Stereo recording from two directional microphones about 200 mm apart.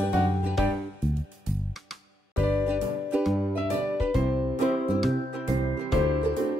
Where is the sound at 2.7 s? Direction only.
5° right (ahead or behind).